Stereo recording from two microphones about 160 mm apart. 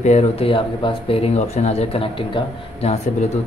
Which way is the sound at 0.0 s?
45° left (ahead or behind).